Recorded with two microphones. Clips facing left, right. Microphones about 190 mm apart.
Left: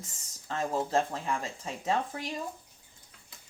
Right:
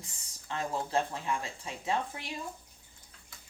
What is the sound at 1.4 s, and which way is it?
Speech, 40° left (ahead or behind).